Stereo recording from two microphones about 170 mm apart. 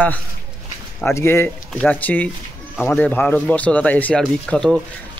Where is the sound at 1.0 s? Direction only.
15° left (ahead or behind).